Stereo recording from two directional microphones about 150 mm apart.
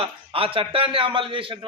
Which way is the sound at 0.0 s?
35° right (ahead or behind).